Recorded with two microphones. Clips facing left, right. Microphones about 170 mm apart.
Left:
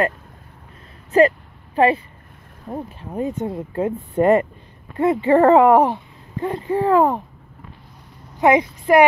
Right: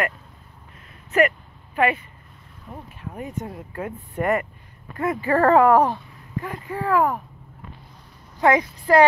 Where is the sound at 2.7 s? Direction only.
40° left (ahead or behind).